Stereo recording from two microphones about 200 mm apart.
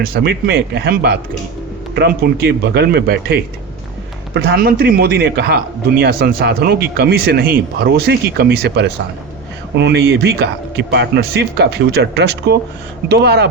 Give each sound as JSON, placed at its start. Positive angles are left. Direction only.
{"t": 0.0, "sound": "a man's voice", "side_deg": -50}